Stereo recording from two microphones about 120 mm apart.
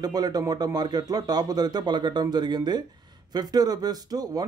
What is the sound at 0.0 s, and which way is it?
Speech, 35° right (ahead or behind).